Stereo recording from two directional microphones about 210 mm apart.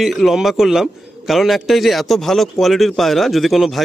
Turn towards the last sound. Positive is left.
turn(degrees=0)  # may be behind; listen again after turning